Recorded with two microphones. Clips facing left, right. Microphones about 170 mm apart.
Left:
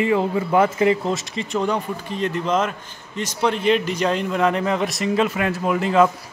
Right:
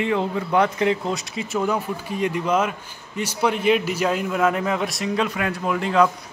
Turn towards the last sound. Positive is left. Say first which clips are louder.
# left 2 dB
turn(degrees=5)  # may be behind; listen again after turning